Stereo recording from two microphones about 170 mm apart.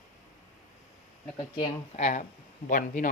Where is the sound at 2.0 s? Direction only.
45° left (ahead or behind).